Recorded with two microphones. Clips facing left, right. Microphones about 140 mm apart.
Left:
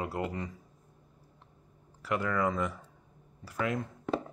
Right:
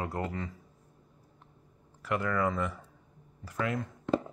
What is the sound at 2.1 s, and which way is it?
Speech, 20° left (ahead or behind).